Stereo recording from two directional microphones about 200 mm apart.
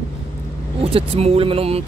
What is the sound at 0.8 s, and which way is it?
Speech, 30° right (ahead or behind).